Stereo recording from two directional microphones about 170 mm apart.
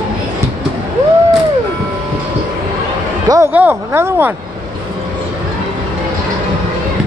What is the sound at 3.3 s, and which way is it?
Speech, 15° right (ahead or behind).